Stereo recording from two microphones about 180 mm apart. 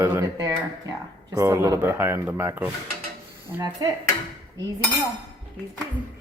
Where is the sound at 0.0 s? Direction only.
15° right (ahead or behind).